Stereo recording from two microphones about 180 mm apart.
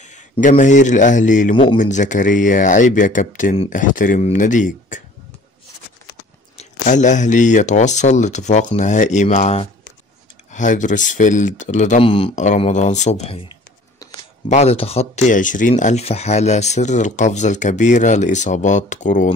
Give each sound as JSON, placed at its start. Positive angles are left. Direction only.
{"t": 0.0, "sound": "a man's voice", "side_deg": 45}
{"t": 6.6, "sound": "speech", "side_deg": 40}
{"t": 14.5, "sound": "speech", "side_deg": 35}